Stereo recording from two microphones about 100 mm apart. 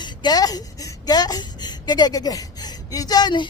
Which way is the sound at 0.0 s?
45° left (ahead or behind).